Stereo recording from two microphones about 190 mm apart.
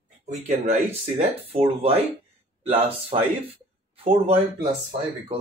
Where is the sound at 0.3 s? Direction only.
35° right (ahead or behind).